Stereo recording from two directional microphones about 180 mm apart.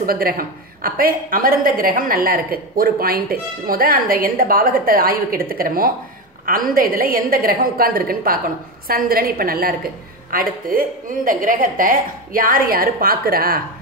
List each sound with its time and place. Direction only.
0.0 s a woman's voice: 55° right (ahead or behind)